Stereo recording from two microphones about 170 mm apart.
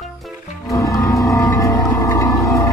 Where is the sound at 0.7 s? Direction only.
20° left (ahead or behind).